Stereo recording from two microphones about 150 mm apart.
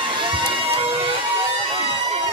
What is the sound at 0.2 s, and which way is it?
Music, 35° right (ahead or behind).